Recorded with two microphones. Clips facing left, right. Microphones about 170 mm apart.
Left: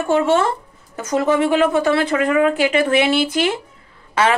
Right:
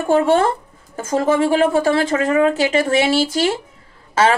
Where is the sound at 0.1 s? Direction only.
35° right (ahead or behind).